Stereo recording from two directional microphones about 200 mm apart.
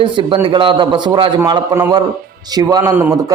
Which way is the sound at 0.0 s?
25° right (ahead or behind).